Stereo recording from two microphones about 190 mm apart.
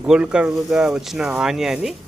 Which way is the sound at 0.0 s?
5° right (ahead or behind).